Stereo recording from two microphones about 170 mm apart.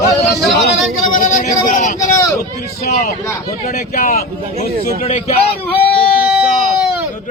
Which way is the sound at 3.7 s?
60° left (ahead or behind).